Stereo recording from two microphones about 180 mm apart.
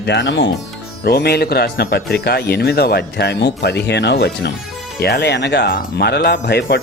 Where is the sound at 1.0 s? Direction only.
65° left (ahead or behind).